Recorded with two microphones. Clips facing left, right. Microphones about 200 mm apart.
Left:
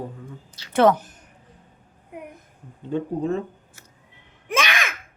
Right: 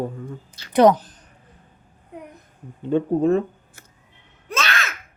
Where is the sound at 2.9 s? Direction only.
60° right (ahead or behind).